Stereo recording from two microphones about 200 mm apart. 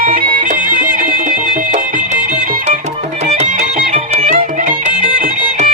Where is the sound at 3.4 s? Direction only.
40° right (ahead or behind).